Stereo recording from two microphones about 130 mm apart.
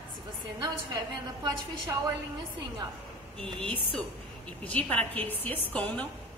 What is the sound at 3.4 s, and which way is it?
A woman's voice, 10° left (ahead or behind).